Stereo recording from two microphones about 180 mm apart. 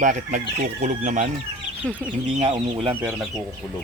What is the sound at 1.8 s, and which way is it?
Speech, 5° right (ahead or behind).